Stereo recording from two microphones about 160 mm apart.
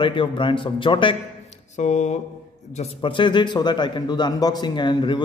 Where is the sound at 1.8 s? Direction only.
45° left (ahead or behind).